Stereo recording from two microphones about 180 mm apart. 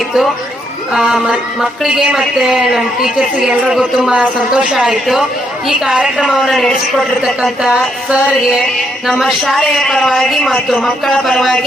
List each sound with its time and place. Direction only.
0.9 s a woman's voice: 5° right (ahead or behind)